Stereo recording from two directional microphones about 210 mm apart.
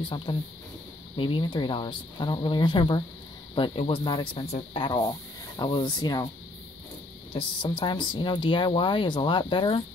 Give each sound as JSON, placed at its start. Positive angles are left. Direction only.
{"t": 0.1, "sound": "speech", "side_deg": 20}
{"t": 7.3, "sound": "speech", "side_deg": 25}